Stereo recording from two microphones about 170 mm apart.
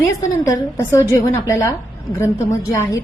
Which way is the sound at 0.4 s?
20° left (ahead or behind).